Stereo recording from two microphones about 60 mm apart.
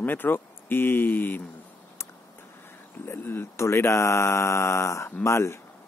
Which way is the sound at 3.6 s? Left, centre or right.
Left.